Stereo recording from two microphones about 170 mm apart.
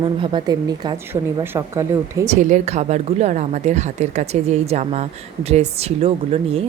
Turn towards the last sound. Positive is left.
turn(degrees=-40)  # may be behind; listen again after turning